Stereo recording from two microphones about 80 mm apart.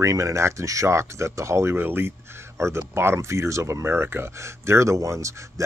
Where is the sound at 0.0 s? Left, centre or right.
Right.